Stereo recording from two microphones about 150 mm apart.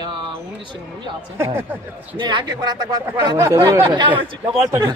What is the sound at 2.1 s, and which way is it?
Speech, 30° right (ahead or behind).